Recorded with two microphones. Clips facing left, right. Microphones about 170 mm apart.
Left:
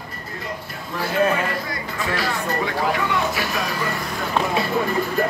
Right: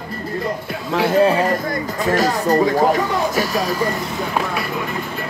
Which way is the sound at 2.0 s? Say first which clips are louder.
Right 8 dB; 40° right (ahead or behind).